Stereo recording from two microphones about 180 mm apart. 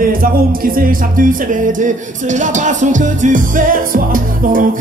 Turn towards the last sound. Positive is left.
turn(degrees=-50)  # may be behind; listen again after turning